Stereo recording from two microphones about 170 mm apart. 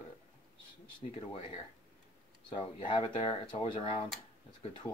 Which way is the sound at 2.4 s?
30° left (ahead or behind).